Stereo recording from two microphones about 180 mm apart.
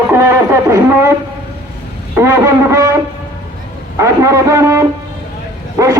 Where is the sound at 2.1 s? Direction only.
15° right (ahead or behind).